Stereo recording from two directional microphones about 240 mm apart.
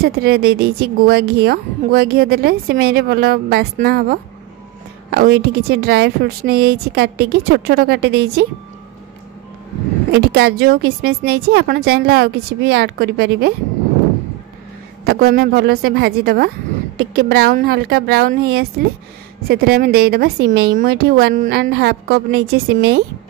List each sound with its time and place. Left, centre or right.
0.0 s a woman's voice: right
10.1 s a woman's voice: right
15.0 s a woman's voice: right